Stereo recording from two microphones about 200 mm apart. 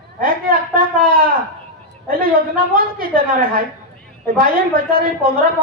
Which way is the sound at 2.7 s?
45° right (ahead or behind).